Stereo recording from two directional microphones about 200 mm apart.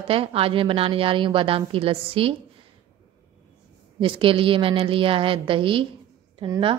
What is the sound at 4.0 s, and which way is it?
Speech, 25° right (ahead or behind).